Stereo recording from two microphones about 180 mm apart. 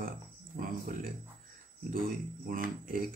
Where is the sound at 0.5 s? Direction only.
65° right (ahead or behind).